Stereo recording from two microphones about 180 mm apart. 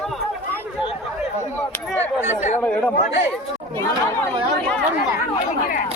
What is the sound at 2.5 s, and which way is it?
Speech, 10° left (ahead or behind).